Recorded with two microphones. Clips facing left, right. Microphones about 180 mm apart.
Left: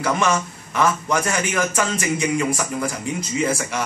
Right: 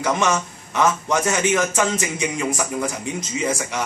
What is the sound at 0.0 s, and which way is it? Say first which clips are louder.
A man's voice: even; 20° right (ahead or behind).